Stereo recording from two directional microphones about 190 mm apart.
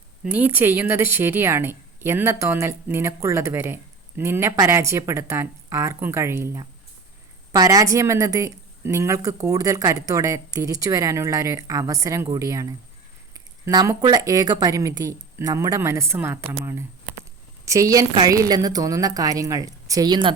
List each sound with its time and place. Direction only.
0.3 s a woman's voice: 10° right (ahead or behind)